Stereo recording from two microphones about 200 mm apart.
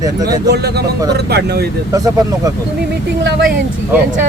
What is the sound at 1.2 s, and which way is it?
Speech, 55° right (ahead or behind).